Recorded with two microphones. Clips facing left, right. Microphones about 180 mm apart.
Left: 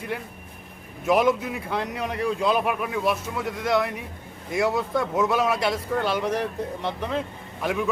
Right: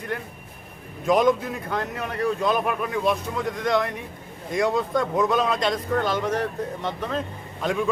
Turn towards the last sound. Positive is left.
turn(degrees=5)  # may be behind; listen again after turning